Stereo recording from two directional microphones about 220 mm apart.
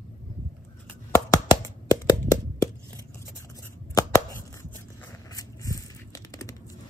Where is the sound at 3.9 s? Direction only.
15° left (ahead or behind).